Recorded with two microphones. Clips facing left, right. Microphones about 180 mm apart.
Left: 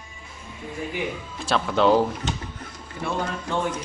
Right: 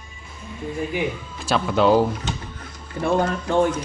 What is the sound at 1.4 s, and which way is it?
Speech, 5° right (ahead or behind).